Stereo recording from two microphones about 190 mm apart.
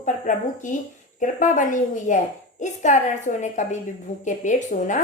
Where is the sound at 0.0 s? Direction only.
40° left (ahead or behind).